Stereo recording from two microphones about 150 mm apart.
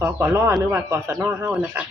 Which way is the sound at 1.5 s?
5° right (ahead or behind).